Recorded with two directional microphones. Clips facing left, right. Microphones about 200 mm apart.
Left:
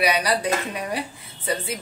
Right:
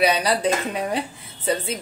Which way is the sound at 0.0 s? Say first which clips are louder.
Right 2 dB; 25° right (ahead or behind).